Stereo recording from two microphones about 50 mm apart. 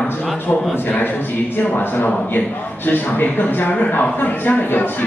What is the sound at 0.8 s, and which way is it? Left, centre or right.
Speech, left.